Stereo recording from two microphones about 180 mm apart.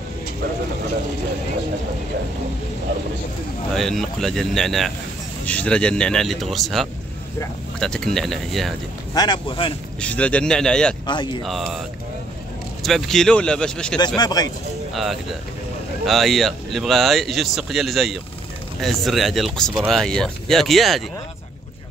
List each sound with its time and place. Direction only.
3.7 s speech: centre (ahead or behind)
9.1 s speech: 25° left (ahead or behind)
9.9 s speech: 5° left (ahead or behind)
11.1 s speech: 25° left (ahead or behind)
11.4 s speech: centre (ahead or behind)
12.8 s speech: centre (ahead or behind)
13.9 s speech: 25° left (ahead or behind)
16.1 s speech: centre (ahead or behind)